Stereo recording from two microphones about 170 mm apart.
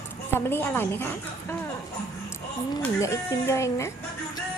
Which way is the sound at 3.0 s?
15° left (ahead or behind).